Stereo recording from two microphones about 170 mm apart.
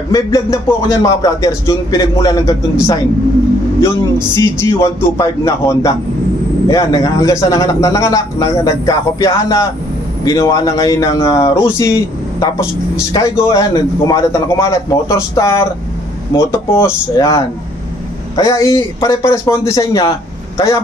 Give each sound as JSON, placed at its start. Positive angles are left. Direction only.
{"t": 0.1, "sound": "a man's voice", "side_deg": 20}
{"t": 4.4, "sound": "a man's voice", "side_deg": 15}